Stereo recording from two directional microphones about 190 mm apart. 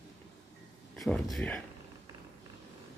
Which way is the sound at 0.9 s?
Centre (ahead or behind).